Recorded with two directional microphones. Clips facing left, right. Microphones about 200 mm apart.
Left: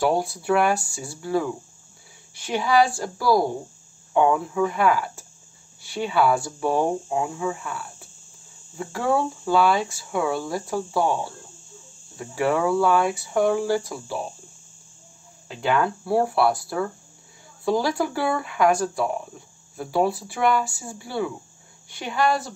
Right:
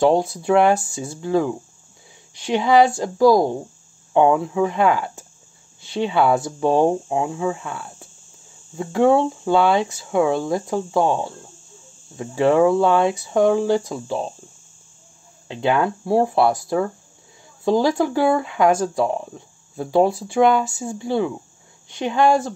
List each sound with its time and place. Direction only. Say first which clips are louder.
0.0 s speech: right 5 dB; 20° right (ahead or behind)
15.5 s speech: right 3 dB; 25° right (ahead or behind)